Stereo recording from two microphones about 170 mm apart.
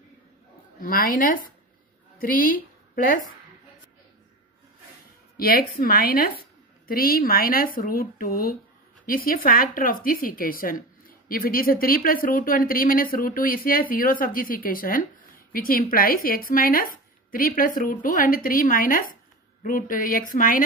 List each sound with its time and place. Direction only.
0.7 s a woman's voice: 60° left (ahead or behind)
5.4 s a woman's voice: 60° left (ahead or behind)